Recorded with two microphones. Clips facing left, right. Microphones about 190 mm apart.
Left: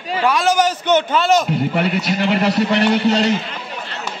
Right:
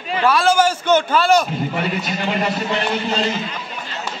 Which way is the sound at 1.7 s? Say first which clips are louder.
Left 4 dB; 70° left (ahead or behind).